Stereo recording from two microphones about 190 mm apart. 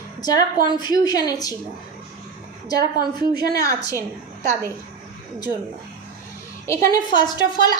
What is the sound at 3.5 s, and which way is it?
Speech, 15° left (ahead or behind).